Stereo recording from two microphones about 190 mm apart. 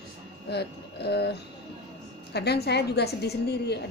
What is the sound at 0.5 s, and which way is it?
Speech, 60° left (ahead or behind).